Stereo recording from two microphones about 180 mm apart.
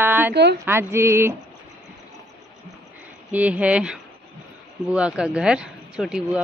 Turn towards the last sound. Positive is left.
turn(degrees=-5)  # may be behind; listen again after turning